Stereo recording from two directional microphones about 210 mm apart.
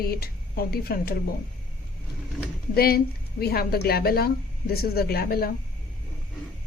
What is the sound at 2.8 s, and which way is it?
A woman's voice, 45° left (ahead or behind).